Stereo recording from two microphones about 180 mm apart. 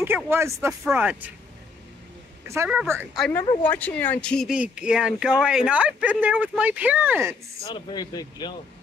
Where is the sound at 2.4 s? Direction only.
15° right (ahead or behind).